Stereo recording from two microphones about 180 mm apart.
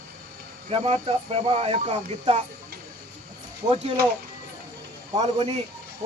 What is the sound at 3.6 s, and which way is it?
Speech, 35° right (ahead or behind).